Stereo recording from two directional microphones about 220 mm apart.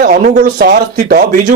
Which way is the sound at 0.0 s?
50° right (ahead or behind).